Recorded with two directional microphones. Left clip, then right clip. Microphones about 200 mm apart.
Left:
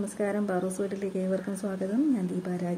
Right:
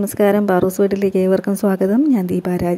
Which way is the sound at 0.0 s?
45° right (ahead or behind).